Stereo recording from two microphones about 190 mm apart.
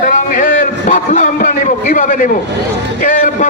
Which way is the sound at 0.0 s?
45° left (ahead or behind).